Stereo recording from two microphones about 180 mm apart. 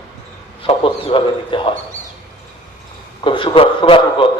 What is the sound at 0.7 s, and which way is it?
A man's voice, 30° left (ahead or behind).